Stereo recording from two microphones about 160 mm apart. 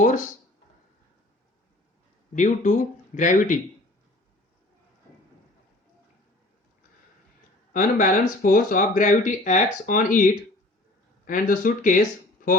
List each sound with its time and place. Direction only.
2.3 s speech: 50° left (ahead or behind)
7.7 s speech: 55° left (ahead or behind)
11.3 s speech: 55° left (ahead or behind)